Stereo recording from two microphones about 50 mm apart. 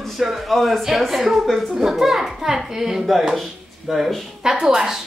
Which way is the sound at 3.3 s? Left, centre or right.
Centre.